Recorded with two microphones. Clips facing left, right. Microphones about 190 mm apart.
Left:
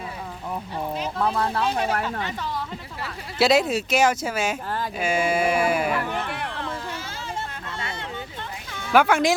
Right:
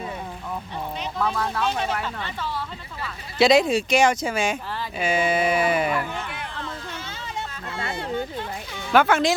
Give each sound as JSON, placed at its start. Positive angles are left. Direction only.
{"t": 1.2, "sound": "speech", "side_deg": 30}
{"t": 3.3, "sound": "speech", "side_deg": 5}
{"t": 6.1, "sound": "a sound", "side_deg": 65}
{"t": 8.9, "sound": "speech", "side_deg": 10}